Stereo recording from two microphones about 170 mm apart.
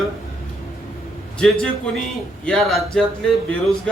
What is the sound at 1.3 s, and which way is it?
A man's voice, 5° left (ahead or behind).